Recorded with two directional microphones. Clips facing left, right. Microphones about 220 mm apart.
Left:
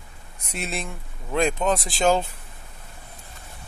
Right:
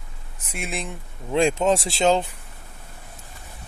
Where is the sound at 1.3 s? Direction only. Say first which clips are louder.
Right 3 dB; 25° right (ahead or behind).